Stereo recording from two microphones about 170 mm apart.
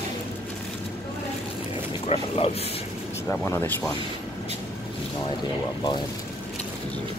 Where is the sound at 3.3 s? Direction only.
10° left (ahead or behind).